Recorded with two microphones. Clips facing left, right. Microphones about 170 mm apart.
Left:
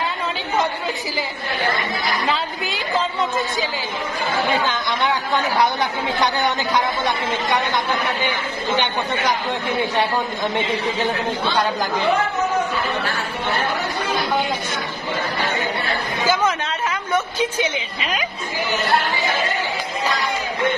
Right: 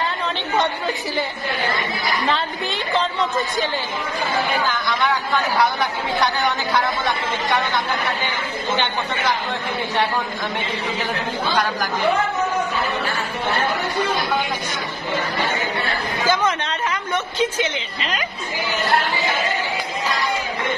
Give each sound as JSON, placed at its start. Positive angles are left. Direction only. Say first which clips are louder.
{"t": 2.2, "sound": "a woman's voice", "louder": "right 1 dB", "side_deg": 0}
{"t": 4.6, "sound": "speech", "louder": "even", "side_deg": 20}
{"t": 16.3, "sound": "a sound", "louder": "even", "side_deg": 5}